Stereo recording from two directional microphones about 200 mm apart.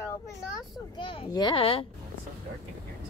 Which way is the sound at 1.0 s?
20° left (ahead or behind).